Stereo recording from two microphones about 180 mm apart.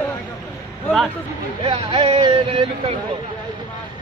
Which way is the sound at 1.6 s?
30° right (ahead or behind).